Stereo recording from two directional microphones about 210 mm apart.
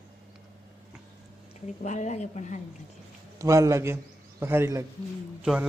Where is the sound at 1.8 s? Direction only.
35° left (ahead or behind).